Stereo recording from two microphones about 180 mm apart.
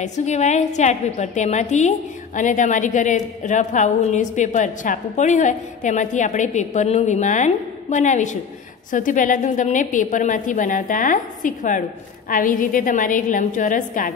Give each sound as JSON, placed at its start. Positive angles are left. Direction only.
{"t": 0.0, "sound": "a woman's voice", "side_deg": 40}